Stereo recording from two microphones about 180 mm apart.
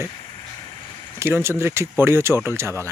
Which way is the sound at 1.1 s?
15° right (ahead or behind).